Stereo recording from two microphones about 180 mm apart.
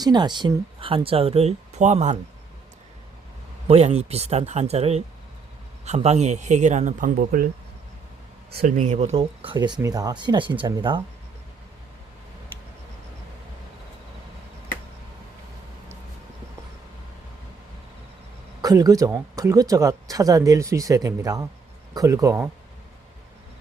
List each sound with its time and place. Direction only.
0.0 s speech: 25° right (ahead or behind); by 2.1 s 40° right (ahead or behind)
3.7 s speech: 35° right (ahead or behind); by 7.4 s 50° right (ahead or behind)
8.4 s speech: 60° right (ahead or behind)
8.7 s speech: 45° right (ahead or behind); by 11.0 s 25° right (ahead or behind)
18.6 s speech: 20° right (ahead or behind)